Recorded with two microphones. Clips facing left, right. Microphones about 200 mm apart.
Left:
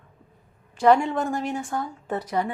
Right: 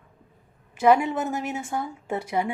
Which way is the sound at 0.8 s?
5° right (ahead or behind).